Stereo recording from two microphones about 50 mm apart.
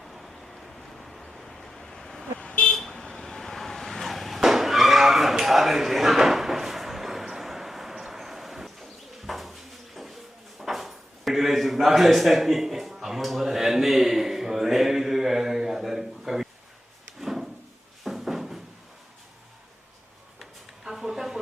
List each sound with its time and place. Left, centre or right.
0.0 s vehicle: centre
2.4 s vehicle: left
2.7 s vehicle: centre
10.6 s drawer open or close: centre
18.0 s a sound: centre
20.4 s a sound: centre